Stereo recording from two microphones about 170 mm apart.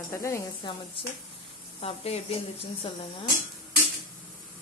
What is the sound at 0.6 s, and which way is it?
Speech, 25° left (ahead or behind).